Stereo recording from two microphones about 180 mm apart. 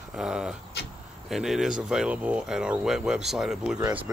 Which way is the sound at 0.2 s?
5° right (ahead or behind).